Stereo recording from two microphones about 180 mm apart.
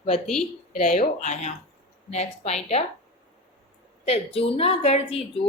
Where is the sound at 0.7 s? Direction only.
45° left (ahead or behind).